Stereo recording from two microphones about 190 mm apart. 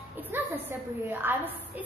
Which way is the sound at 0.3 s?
10° right (ahead or behind).